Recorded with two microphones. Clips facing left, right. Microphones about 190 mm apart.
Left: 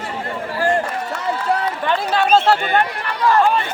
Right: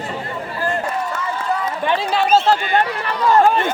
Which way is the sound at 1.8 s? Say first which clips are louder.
Even; 10° right (ahead or behind).